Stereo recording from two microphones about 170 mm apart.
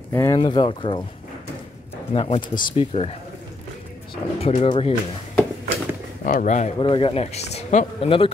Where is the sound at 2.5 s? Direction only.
55° left (ahead or behind).